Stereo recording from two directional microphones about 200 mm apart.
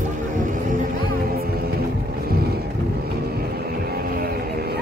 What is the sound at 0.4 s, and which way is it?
Music, 40° right (ahead or behind).